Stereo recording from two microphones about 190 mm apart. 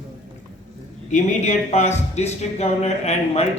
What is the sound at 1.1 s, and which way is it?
A man's voice, 40° left (ahead or behind).